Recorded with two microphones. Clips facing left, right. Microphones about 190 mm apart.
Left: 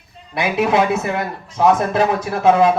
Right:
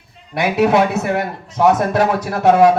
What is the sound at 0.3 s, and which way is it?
Speech, 60° right (ahead or behind).